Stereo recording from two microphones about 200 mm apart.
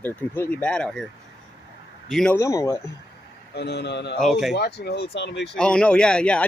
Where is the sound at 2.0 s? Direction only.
Centre (ahead or behind).